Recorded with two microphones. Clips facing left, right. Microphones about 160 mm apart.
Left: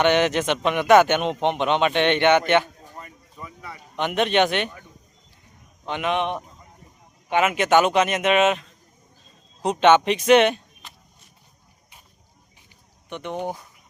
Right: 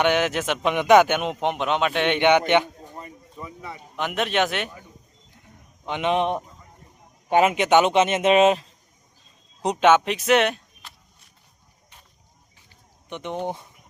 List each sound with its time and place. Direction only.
0.0 s a man's voice: 5° right (ahead or behind)
2.5 s a sound: 20° right (ahead or behind)
3.4 s speech: 20° right (ahead or behind)
3.9 s a man's voice: centre (ahead or behind)
5.8 s a man's voice: 15° right (ahead or behind)
6.1 s a man's voice: 35° right (ahead or behind)
7.5 s speech: 20° right (ahead or behind)
9.8 s speech: 5° right (ahead or behind)
13.1 s speech: 20° right (ahead or behind)